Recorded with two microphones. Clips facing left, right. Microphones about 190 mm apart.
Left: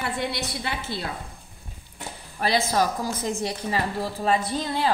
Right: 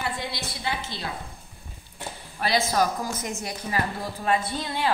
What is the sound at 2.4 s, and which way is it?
A woman's voice, 30° left (ahead or behind).